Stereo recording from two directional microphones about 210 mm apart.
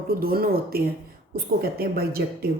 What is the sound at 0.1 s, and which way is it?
Speech, 45° right (ahead or behind).